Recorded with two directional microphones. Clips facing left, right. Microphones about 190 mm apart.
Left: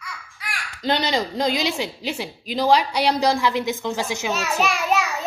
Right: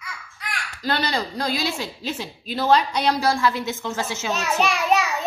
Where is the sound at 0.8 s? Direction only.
20° left (ahead or behind).